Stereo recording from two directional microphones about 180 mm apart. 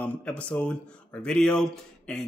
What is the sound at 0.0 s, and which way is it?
A man's voice, 5° left (ahead or behind).